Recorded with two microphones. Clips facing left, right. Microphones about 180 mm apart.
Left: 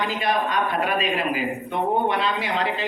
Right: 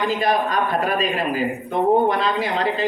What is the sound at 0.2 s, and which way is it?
A man's voice, 40° right (ahead or behind).